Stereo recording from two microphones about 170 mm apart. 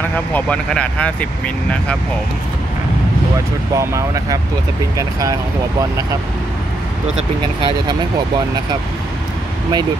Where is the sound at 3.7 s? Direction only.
20° right (ahead or behind).